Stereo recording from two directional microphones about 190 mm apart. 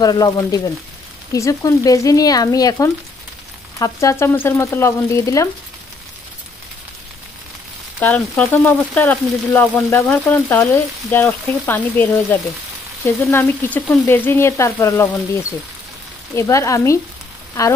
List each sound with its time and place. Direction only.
0.0 s speech: 20° left (ahead or behind)
8.0 s speech: 5° left (ahead or behind)
16.3 s speech: 15° left (ahead or behind)